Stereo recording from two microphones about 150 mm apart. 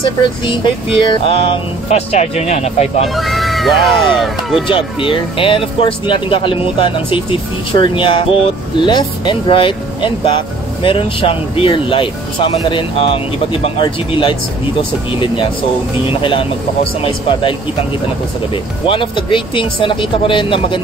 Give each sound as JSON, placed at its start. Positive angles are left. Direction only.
{"t": 0.5, "sound": "speech", "side_deg": 30}
{"t": 3.2, "sound": "speech", "side_deg": 0}
{"t": 4.6, "sound": "speech", "side_deg": 35}